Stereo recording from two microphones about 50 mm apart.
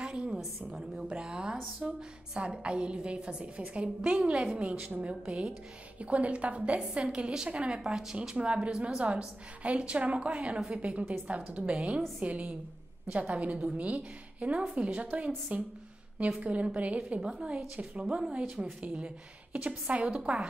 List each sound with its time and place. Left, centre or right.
0.0 s a sound: centre
0.7 s a woman's voice: centre; by 11.7 s right
11.7 s a woman's voice: centre
12.2 s a woman's voice: right